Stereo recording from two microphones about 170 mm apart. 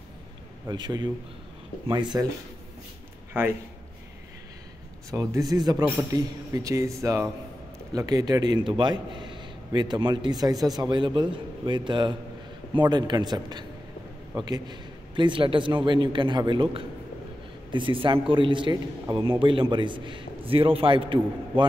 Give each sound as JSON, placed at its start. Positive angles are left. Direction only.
{"t": 0.7, "sound": "a man's voice", "side_deg": -25}
{"t": 3.3, "sound": "a man's voice", "side_deg": -10}
{"t": 5.1, "sound": "a man's voice", "side_deg": -20}